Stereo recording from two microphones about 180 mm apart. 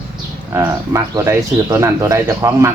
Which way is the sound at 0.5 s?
15° right (ahead or behind).